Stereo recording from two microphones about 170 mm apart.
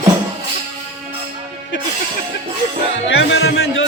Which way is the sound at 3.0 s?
90° left.